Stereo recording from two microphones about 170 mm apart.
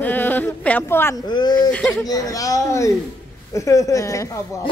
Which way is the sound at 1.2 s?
25° left (ahead or behind).